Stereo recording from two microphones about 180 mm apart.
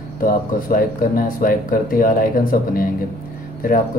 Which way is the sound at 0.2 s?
50° left (ahead or behind).